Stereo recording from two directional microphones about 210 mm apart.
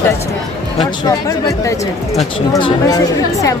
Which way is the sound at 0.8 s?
15° left (ahead or behind).